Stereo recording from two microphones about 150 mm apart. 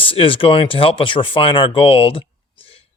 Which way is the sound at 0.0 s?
35° left (ahead or behind).